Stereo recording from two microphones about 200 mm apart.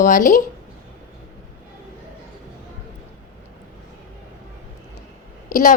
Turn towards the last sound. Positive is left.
turn(degrees=45)  # may be behind; listen again after turning